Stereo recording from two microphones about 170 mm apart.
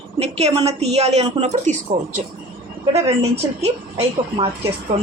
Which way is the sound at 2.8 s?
35° right (ahead or behind).